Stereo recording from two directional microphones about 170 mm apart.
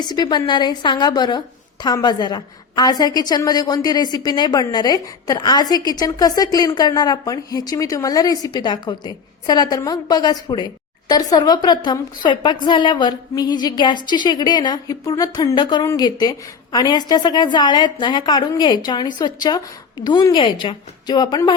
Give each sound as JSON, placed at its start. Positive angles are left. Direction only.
{"t": 0.0, "sound": "a woman's voice", "side_deg": 25}